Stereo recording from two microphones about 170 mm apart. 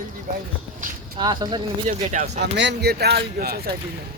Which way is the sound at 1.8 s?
45° right (ahead or behind).